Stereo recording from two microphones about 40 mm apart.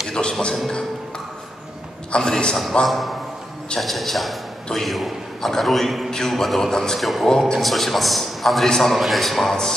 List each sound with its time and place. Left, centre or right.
0.2 s music: centre
2.1 s a man's voice: centre
2.9 s a man's voice: centre
6.0 s a man's voice: centre
7.0 s a man's voice: centre
7.2 s a man's voice: centre
7.5 s a man's voice: centre
8.9 s a man's voice: centre